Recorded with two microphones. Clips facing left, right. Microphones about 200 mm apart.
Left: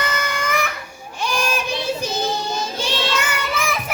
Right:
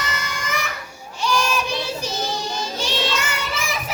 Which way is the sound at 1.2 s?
55° left (ahead or behind).